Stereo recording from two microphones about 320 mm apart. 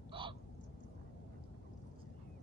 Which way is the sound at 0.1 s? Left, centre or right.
Centre.